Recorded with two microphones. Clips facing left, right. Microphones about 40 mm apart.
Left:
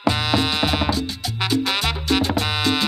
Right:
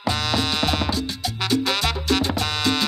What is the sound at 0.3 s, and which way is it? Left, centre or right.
Music, centre.